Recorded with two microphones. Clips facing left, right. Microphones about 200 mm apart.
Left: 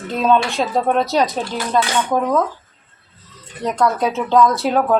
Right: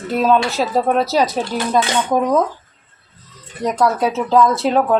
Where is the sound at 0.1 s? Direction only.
5° right (ahead or behind).